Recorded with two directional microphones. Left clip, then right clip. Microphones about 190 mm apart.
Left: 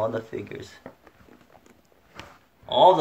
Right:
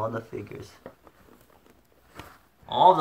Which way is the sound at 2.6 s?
Centre (ahead or behind).